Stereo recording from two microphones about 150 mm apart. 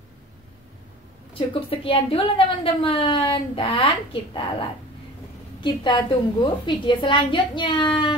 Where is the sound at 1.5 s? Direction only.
40° left (ahead or behind).